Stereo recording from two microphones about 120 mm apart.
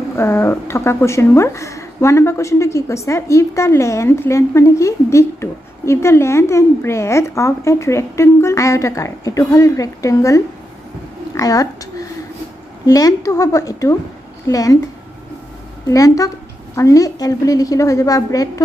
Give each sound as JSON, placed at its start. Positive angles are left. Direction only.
{"t": 0.2, "sound": "a woman's voice", "side_deg": 20}
{"t": 15.9, "sound": "a woman's voice", "side_deg": 30}